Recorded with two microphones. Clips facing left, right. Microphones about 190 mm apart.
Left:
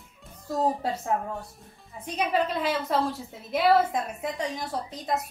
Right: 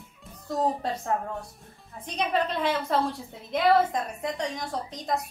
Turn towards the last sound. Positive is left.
turn(degrees=5)  # may be behind; listen again after turning